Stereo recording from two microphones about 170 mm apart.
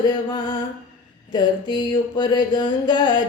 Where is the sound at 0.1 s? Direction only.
25° left (ahead or behind).